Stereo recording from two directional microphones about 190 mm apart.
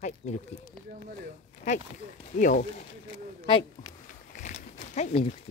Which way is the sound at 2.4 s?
45° left (ahead or behind).